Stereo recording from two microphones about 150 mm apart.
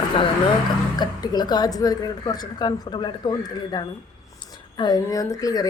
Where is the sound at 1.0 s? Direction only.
30° left (ahead or behind).